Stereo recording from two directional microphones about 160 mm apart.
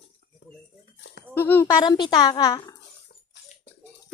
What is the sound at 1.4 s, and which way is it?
Speech, 15° left (ahead or behind).